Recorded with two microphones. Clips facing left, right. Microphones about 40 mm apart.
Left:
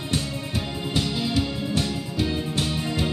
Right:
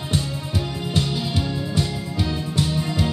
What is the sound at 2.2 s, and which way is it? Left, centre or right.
Music, centre.